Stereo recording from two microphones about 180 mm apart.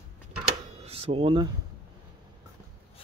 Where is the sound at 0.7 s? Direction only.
35° right (ahead or behind).